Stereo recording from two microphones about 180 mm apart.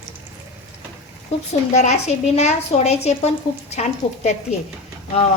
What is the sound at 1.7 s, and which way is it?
Speech, 40° left (ahead or behind).